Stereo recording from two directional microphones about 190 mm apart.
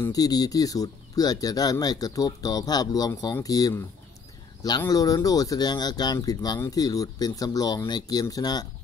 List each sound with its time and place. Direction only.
0.0 s speech: 20° left (ahead or behind)